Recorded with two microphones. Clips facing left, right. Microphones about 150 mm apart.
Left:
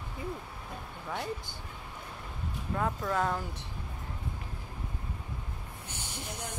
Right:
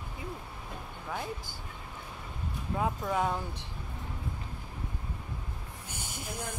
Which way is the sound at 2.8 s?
15° right (ahead or behind).